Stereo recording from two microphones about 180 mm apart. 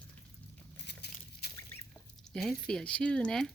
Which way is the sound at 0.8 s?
65° left (ahead or behind).